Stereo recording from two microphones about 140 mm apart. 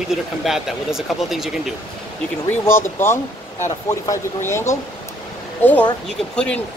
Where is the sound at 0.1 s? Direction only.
Centre (ahead or behind).